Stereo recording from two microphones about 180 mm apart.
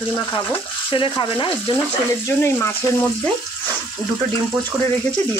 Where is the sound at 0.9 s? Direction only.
30° left (ahead or behind).